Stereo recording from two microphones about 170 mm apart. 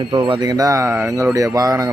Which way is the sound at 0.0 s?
30° right (ahead or behind).